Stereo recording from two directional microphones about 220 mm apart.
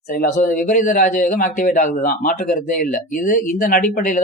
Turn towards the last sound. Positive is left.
turn(degrees=35)  # may be behind; listen again after turning